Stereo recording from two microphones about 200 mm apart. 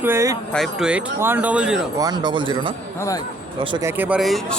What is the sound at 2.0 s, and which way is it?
Speech, 20° right (ahead or behind).